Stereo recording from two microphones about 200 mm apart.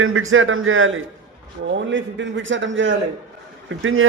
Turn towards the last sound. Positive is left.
turn(degrees=-85)